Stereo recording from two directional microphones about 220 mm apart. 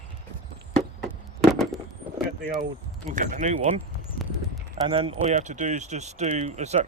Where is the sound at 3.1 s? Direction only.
35° right (ahead or behind).